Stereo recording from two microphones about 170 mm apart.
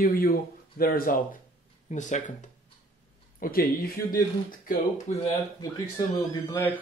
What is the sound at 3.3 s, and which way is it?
Speech, 60° left (ahead or behind).